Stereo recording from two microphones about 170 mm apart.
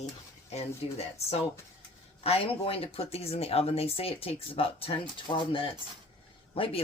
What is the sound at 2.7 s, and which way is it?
Speech, 35° left (ahead or behind).